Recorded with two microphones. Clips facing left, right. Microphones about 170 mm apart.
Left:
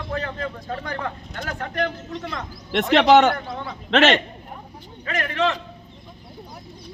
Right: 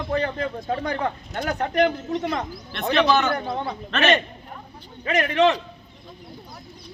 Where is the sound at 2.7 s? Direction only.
90° left.